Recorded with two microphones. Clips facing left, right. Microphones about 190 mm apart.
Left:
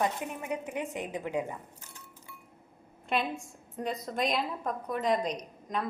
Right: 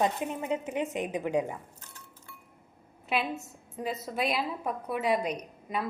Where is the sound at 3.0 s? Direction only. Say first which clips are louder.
Even; 5° right (ahead or behind).